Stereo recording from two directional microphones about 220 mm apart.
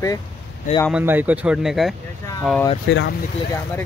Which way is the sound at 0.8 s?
5° right (ahead or behind).